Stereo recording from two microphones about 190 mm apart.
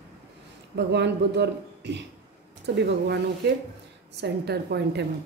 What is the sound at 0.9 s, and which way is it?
A woman's voice, 65° right (ahead or behind).